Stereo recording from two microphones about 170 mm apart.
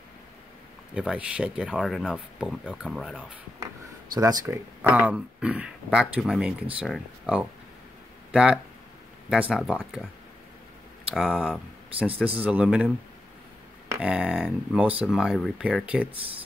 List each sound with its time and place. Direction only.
0.9 s speech: 5° right (ahead or behind)
4.1 s speech: 20° right (ahead or behind)
4.8 s speech: 10° right (ahead or behind)
11.1 s speech: 5° right (ahead or behind)
13.9 s speech: 5° right (ahead or behind)